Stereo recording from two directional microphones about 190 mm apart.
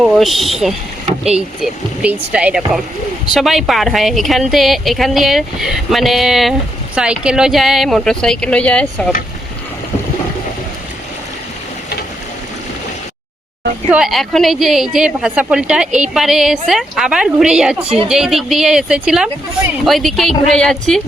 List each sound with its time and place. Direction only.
0.0 s a woman's voice: centre (ahead or behind)
13.9 s a woman's voice: centre (ahead or behind)
17.8 s a woman's voice: 30° right (ahead or behind)
18.1 s a woman's voice: centre (ahead or behind)